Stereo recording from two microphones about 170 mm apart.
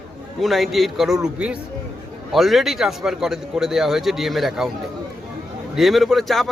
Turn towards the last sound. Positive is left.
turn(degrees=0)  # may be behind; listen again after turning